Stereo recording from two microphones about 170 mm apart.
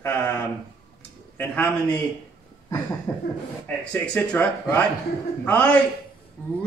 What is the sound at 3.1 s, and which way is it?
Speech, 20° left (ahead or behind).